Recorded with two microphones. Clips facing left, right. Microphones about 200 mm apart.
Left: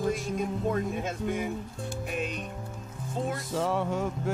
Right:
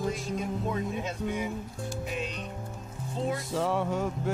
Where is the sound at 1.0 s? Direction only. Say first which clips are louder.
Left 1 dB; 50° left (ahead or behind).